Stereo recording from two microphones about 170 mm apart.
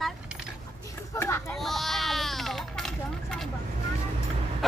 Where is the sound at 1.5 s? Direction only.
Centre (ahead or behind).